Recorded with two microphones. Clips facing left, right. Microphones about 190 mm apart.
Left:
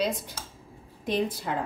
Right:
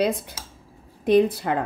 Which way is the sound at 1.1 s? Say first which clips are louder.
Right 10 dB; 60° right (ahead or behind).